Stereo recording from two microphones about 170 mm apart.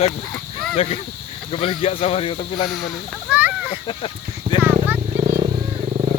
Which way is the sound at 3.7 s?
35° left (ahead or behind).